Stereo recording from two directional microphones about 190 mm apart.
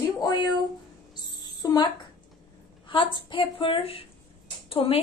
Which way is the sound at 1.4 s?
20° left (ahead or behind).